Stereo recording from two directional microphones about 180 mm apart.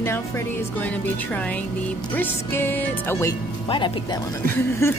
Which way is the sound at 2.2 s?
10° left (ahead or behind).